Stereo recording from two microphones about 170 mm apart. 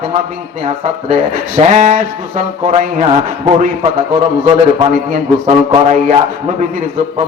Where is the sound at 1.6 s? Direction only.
40° right (ahead or behind).